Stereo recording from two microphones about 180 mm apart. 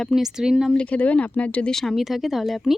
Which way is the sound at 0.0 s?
Centre (ahead or behind).